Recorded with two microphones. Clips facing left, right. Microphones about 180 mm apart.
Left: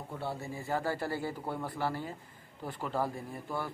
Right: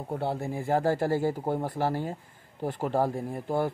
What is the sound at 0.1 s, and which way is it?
Speech, 60° right (ahead or behind).